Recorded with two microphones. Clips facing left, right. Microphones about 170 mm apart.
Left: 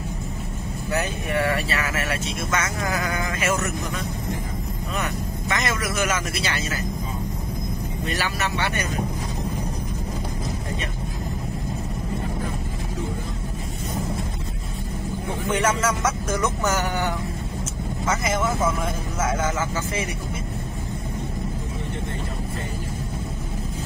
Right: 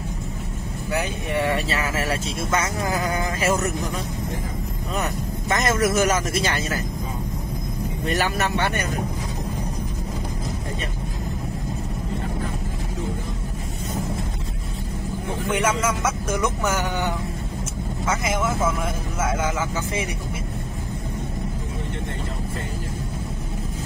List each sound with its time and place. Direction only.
0.9 s speech: 20° right (ahead or behind)
5.5 s a man's voice: 45° right (ahead or behind)
8.1 s a man's voice: 50° right (ahead or behind)
15.5 s speech: 10° right (ahead or behind)
18.0 s speech: 10° right (ahead or behind)